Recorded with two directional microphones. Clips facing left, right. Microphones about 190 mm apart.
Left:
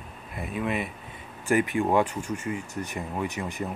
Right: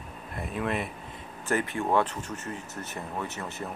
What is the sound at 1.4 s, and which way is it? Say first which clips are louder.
Speech: left 5 dB; 15° left (ahead or behind).